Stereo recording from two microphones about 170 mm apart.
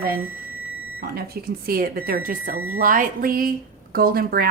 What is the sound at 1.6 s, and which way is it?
A woman's voice, 60° right (ahead or behind).